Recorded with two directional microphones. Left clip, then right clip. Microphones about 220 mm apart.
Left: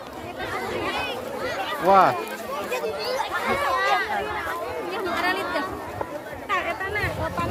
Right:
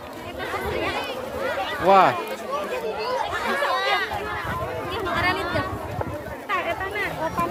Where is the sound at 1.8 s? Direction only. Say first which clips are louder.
Right 1 dB; 5° right (ahead or behind).